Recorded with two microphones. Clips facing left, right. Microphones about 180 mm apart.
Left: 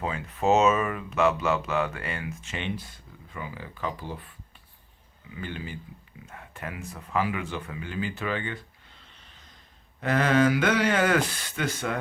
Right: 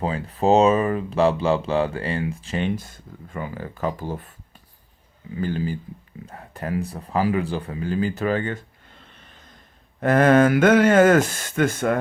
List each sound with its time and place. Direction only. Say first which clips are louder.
0.0 s speech: right 5 dB; 35° right (ahead or behind); by 11.9 s 50° right (ahead or behind)